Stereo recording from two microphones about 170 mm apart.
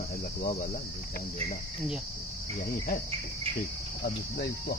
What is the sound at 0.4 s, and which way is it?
Speech, 55° left (ahead or behind).